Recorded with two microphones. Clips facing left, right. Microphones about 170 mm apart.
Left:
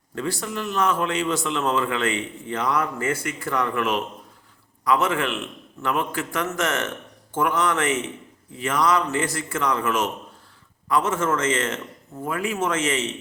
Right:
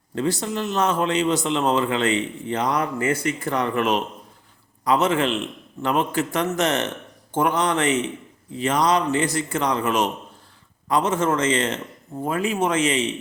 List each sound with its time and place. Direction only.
0.1 s a man's voice: 20° right (ahead or behind)